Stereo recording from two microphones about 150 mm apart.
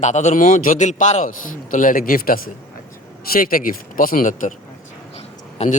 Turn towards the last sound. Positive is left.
turn(degrees=45)  # may be behind; listen again after turning